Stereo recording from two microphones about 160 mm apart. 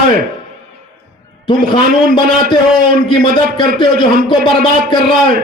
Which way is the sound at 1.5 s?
30° left (ahead or behind).